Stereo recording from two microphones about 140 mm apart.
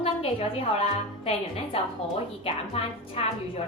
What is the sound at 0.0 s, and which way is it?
A woman's voice, 40° left (ahead or behind).